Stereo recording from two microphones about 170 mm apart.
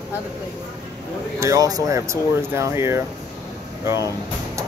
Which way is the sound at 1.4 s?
20° right (ahead or behind).